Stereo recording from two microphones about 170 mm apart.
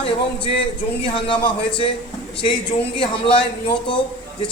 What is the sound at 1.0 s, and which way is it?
Speech, 30° left (ahead or behind).